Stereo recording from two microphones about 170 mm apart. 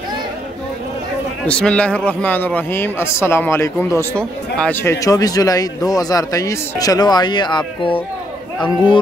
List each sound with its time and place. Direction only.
1.5 s a man's voice: 5° left (ahead or behind)
5.0 s a man's voice: 20° left (ahead or behind)